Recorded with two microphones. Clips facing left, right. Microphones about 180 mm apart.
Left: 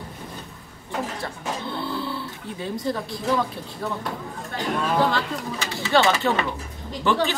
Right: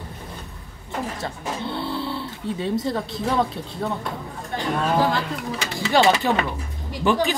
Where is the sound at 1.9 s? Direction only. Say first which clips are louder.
Right 2 dB; 25° right (ahead or behind).